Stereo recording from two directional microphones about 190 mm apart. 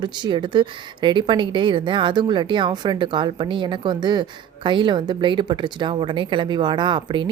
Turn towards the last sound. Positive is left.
turn(degrees=-25)  # may be behind; listen again after turning